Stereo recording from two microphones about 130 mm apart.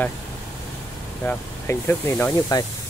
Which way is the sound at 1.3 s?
20° left (ahead or behind).